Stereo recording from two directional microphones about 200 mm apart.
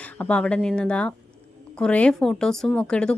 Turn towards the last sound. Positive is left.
turn(degrees=5)  # may be behind; listen again after turning